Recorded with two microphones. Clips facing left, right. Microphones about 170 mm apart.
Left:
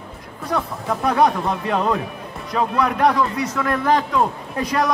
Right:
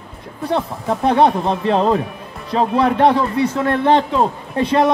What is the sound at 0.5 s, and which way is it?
Speech, 25° right (ahead or behind).